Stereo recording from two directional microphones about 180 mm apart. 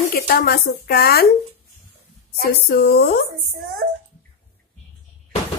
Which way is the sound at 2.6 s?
60° left (ahead or behind).